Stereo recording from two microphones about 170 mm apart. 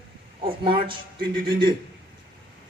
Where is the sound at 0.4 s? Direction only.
30° right (ahead or behind).